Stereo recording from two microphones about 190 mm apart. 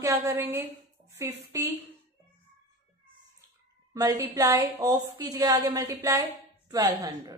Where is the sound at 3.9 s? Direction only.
20° right (ahead or behind).